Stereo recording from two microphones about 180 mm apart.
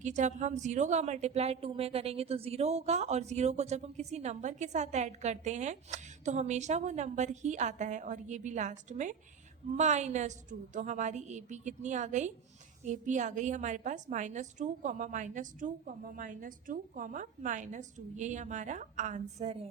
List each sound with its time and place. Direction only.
0.0 s a woman's voice: 40° right (ahead or behind)